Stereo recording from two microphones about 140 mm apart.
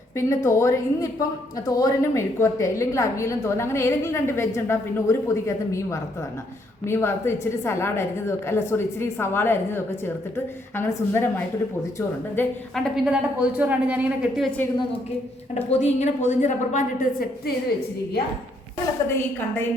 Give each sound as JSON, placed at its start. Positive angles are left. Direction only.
{"t": 0.2, "sound": "a woman's voice", "side_deg": 20}
{"t": 12.7, "sound": "a woman's voice", "side_deg": 5}
{"t": 13.4, "sound": "a man's voice", "side_deg": -10}
{"t": 14.4, "sound": "a woman's voice", "side_deg": 10}
{"t": 15.5, "sound": "a woman's voice", "side_deg": 55}
{"t": 19.0, "sound": "a woman's voice", "side_deg": 15}